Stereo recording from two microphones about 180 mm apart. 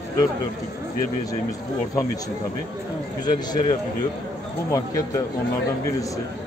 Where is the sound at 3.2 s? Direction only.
25° left (ahead or behind).